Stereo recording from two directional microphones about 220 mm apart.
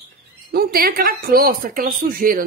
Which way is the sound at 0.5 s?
45° right (ahead or behind).